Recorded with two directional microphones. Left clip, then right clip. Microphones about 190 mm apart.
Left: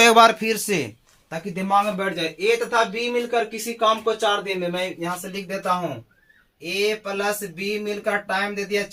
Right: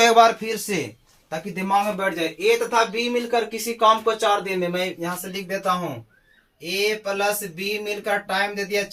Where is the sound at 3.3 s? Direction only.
10° left (ahead or behind).